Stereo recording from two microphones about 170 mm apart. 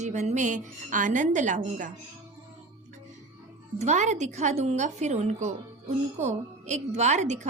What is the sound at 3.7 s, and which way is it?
A woman's voice, 40° right (ahead or behind).